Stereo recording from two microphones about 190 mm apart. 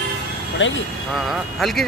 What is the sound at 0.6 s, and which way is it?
Speech, 80° left.